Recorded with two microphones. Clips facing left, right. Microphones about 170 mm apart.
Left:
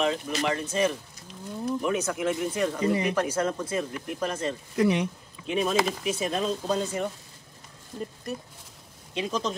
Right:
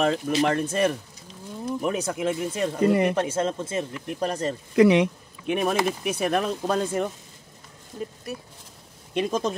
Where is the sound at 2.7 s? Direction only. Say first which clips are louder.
Right 9 dB; 55° right (ahead or behind).